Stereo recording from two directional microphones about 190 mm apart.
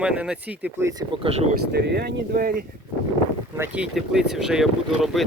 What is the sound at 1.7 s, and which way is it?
Speech, 60° right (ahead or behind).